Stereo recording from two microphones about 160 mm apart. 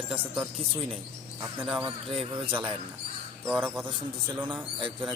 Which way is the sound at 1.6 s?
10° right (ahead or behind).